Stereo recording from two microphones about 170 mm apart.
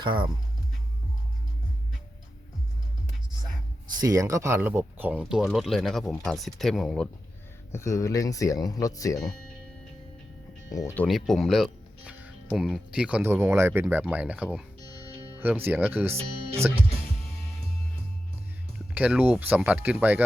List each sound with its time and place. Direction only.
0.0 s speech: 30° right (ahead or behind)
4.0 s speech: 20° right (ahead or behind)
5.1 s speech: centre (ahead or behind)
7.7 s speech: 15° left (ahead or behind)
10.7 s speech: 20° left (ahead or behind); by 16.1 s 10° right (ahead or behind)
18.9 s speech: 10° right (ahead or behind)